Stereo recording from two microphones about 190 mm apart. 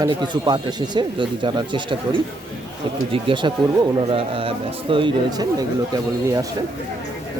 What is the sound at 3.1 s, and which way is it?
Speech, 25° right (ahead or behind).